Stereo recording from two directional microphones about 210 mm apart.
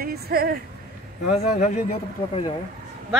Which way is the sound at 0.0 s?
45° right (ahead or behind).